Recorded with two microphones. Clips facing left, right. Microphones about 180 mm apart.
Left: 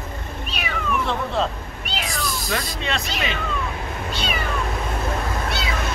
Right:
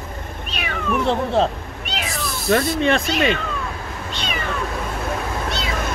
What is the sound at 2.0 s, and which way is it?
Cat, centre (ahead or behind).